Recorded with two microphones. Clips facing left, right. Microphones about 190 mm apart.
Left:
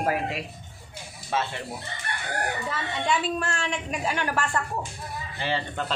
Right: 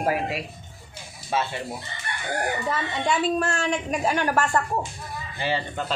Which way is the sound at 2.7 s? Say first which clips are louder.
Right 1 dB; 40° right (ahead or behind).